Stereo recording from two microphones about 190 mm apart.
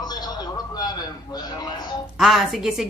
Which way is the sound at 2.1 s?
Centre (ahead or behind).